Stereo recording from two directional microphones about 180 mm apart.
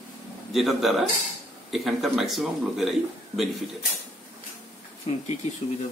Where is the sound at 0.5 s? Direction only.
Centre (ahead or behind).